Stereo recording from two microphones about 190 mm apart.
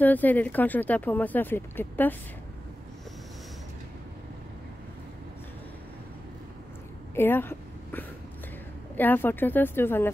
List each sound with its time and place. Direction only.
0.0 s speech: 10° left (ahead or behind)
7.2 s a sound: 10° left (ahead or behind)
8.9 s speech: 10° left (ahead or behind)